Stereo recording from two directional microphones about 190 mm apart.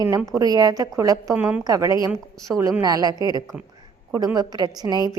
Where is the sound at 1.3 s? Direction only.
5° right (ahead or behind).